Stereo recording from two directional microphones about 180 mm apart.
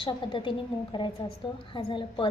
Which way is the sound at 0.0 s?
30° left (ahead or behind).